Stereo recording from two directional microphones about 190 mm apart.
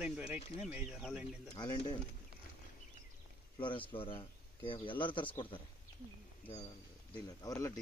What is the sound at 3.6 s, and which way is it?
Speech, 25° left (ahead or behind).